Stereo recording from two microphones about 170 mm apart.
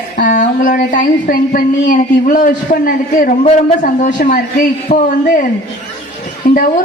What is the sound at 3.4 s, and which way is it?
Speech, 40° left (ahead or behind).